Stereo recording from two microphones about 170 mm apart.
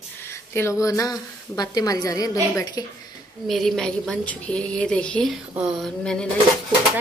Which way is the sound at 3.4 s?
5° left (ahead or behind).